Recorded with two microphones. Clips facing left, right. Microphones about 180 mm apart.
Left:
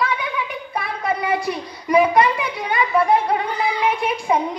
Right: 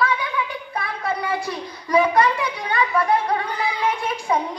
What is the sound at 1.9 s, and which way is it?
Speech, 15° left (ahead or behind).